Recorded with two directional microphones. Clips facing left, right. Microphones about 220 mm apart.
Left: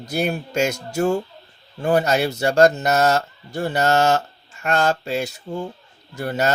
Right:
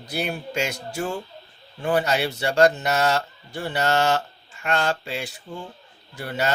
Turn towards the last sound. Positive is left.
turn(degrees=45)  # may be behind; listen again after turning